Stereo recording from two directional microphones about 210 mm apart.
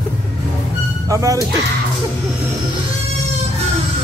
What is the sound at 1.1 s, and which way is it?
Speech, 15° right (ahead or behind).